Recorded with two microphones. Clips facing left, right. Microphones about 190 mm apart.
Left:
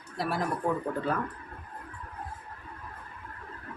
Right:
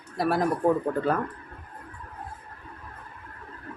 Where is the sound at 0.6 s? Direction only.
35° right (ahead or behind).